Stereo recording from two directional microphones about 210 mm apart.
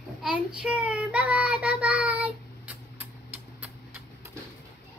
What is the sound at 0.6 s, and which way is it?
Child singing, 5° right (ahead or behind).